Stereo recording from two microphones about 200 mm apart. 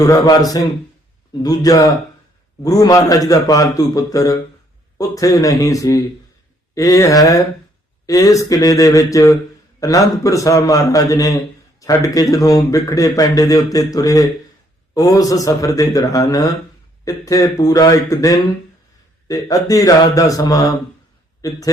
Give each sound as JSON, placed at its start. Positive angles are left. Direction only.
{"t": 0.0, "sound": "a man's voice", "side_deg": 20}